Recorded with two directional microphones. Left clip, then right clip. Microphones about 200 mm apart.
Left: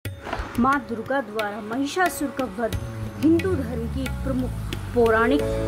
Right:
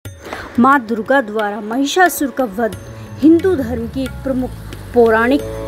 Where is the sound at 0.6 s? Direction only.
35° right (ahead or behind).